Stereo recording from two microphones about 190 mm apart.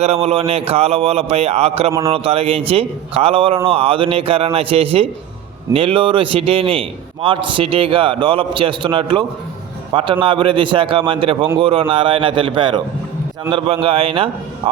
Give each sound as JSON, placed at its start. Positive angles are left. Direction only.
{"t": 0.0, "sound": "a man's voice", "side_deg": -30}
{"t": 1.9, "sound": "a man's voice", "side_deg": -15}
{"t": 2.1, "sound": "a man's voice", "side_deg": -30}